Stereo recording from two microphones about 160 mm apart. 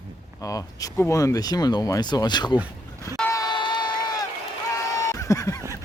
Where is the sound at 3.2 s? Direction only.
20° left (ahead or behind).